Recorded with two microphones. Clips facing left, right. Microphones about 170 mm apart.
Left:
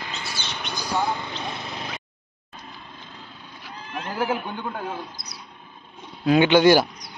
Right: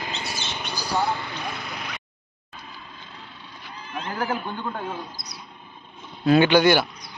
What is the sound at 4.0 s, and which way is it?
Speech, 10° left (ahead or behind).